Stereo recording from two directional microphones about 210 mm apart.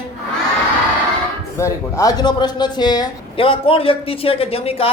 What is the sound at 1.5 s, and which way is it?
A man's voice, 15° left (ahead or behind).